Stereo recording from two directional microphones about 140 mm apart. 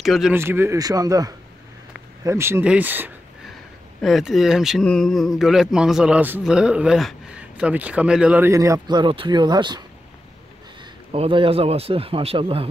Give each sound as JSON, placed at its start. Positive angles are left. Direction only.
{"t": 0.0, "sound": "speech", "side_deg": 0}
{"t": 0.3, "sound": "speech", "side_deg": -15}
{"t": 4.0, "sound": "speech", "side_deg": 0}
{"t": 8.5, "sound": "speech", "side_deg": -25}
{"t": 11.1, "sound": "a man's voice", "side_deg": -40}